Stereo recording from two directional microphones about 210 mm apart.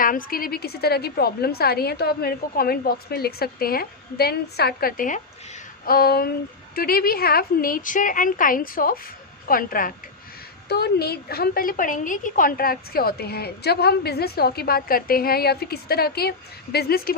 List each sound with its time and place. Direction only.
0.0 s a woman's voice: 40° left (ahead or behind)